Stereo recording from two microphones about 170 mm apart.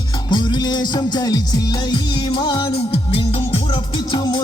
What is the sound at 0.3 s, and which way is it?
Music, 25° left (ahead or behind).